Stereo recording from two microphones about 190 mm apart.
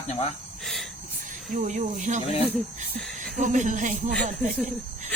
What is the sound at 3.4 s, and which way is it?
Speech, 40° right (ahead or behind).